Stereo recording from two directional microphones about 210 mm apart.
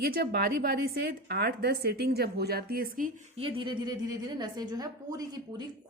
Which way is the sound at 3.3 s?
25° right (ahead or behind).